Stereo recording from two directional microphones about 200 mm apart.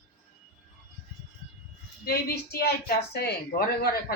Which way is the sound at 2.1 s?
50° left (ahead or behind).